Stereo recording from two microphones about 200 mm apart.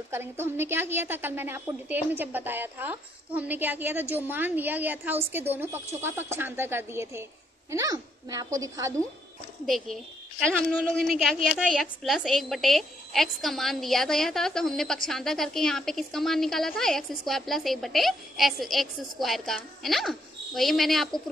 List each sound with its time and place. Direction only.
0.1 s a woman's voice: 10° right (ahead or behind)
9.7 s a woman's voice: centre (ahead or behind)